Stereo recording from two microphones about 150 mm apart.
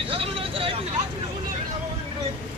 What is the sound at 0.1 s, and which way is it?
Vehicle, 35° right (ahead or behind).